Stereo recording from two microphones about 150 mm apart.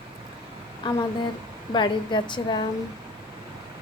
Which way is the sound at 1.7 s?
30° left (ahead or behind).